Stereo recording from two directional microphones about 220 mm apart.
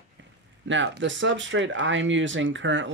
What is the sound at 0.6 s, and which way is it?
Speech, 55° right (ahead or behind).